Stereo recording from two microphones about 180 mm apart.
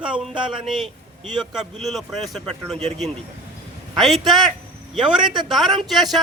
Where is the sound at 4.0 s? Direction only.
Centre (ahead or behind).